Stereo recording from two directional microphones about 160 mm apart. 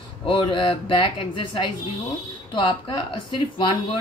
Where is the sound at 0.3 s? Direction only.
30° left (ahead or behind).